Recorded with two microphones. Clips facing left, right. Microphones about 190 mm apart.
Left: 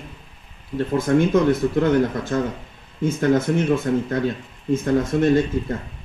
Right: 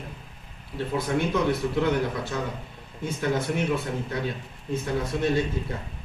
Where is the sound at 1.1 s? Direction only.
55° left (ahead or behind).